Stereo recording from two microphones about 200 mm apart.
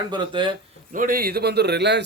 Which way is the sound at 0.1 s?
20° right (ahead or behind).